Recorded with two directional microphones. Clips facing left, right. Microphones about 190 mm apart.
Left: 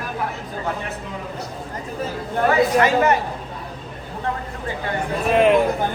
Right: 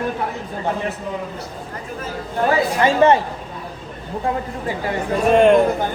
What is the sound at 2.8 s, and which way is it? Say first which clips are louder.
Speech: right 3 dB; 30° right (ahead or behind).